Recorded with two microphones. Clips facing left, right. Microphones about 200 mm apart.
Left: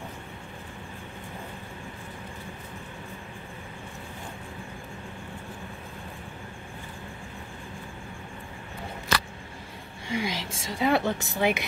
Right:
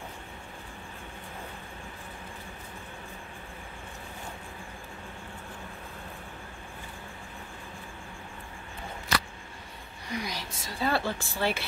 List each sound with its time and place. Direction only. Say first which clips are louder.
10.0 s speech: left 5 dB; 25° left (ahead or behind)